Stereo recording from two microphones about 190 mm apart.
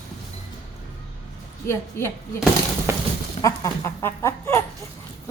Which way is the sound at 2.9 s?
15° right (ahead or behind).